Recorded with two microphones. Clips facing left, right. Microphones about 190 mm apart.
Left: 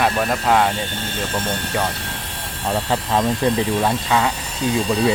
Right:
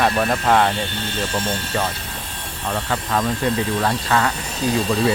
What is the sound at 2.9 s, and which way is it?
Speech, 25° left (ahead or behind).